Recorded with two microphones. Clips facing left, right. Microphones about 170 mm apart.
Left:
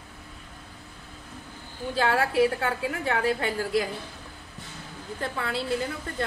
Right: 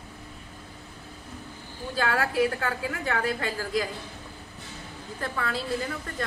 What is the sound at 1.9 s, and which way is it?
A woman's voice, 25° left (ahead or behind).